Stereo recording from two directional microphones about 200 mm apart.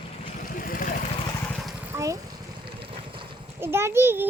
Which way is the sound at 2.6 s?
25° right (ahead or behind).